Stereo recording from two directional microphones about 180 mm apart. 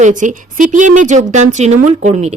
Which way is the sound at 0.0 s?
45° right (ahead or behind).